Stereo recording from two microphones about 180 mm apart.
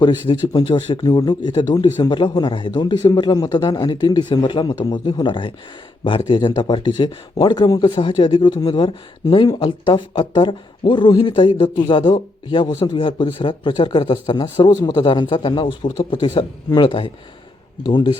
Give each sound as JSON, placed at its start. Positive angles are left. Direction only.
{"t": 0.0, "sound": "a man's voice", "side_deg": 25}